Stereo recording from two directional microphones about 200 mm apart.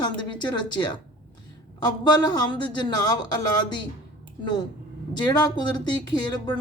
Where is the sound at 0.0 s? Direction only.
20° left (ahead or behind).